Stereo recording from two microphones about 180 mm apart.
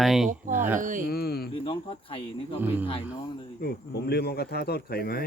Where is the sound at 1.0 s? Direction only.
60° left (ahead or behind).